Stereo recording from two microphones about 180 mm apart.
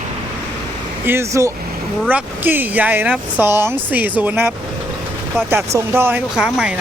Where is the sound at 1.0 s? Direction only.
15° right (ahead or behind).